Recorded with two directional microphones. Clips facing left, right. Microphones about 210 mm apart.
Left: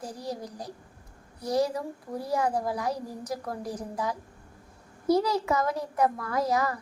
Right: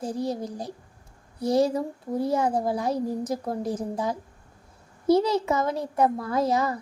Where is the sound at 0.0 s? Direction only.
25° right (ahead or behind).